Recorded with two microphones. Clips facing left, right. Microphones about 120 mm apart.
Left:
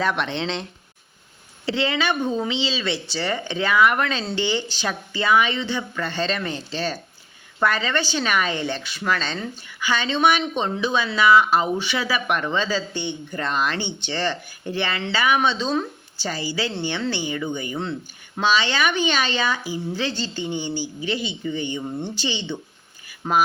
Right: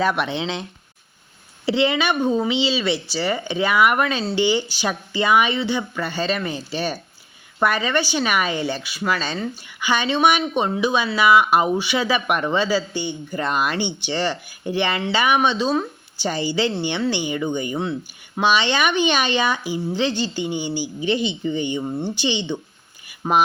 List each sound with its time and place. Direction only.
0.0 s speech: 10° right (ahead or behind)
1.6 s speech: 15° right (ahead or behind)
16.2 s a woman's voice: 20° right (ahead or behind)
23.0 s a sound: 20° right (ahead or behind)